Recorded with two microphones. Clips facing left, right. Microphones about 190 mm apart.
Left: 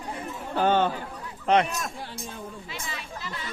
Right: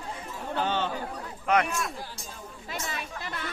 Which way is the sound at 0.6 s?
50° left (ahead or behind).